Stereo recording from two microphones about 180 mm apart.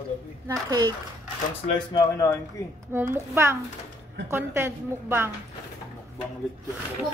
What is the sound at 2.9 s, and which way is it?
A woman's voice, 15° right (ahead or behind).